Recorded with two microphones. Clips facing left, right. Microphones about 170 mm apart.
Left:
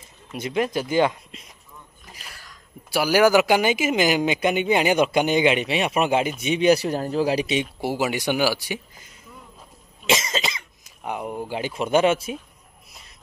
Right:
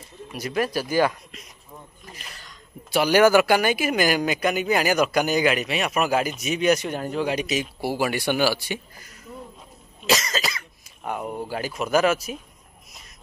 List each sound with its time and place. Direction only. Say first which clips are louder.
0.3 s speech: left 1 dB; 20° left (ahead or behind)
2.1 s speech: right 1 dB; 5° left (ahead or behind); by 7.6 s 30° left (ahead or behind)
7.8 s speech: even; 15° left (ahead or behind)
10.0 s cough: even; 25° left (ahead or behind)
11.1 s speech: even; 15° left (ahead or behind)